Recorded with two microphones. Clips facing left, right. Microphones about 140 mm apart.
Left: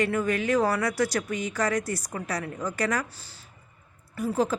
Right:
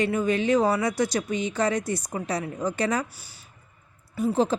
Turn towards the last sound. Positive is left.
turn(degrees=-25)  # may be behind; listen again after turning